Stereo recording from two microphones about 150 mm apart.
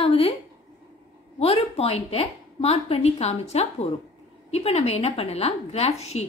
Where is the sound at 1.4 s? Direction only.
40° left (ahead or behind).